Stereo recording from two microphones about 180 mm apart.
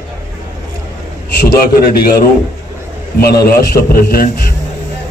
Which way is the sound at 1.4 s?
55° left (ahead or behind).